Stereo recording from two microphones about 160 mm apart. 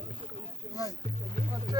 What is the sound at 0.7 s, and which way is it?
Speech, 20° left (ahead or behind).